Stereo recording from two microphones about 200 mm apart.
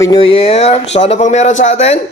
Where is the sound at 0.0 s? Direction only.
25° left (ahead or behind).